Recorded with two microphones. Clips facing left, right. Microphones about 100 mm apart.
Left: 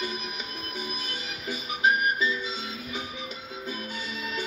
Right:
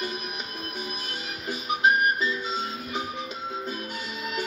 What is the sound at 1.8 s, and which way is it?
Music, 55° right (ahead or behind).